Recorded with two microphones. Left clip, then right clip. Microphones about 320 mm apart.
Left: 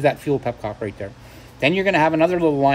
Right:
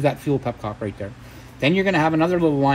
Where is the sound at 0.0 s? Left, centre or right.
Right.